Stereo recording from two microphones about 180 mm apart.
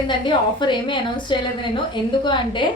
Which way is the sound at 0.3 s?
25° left (ahead or behind).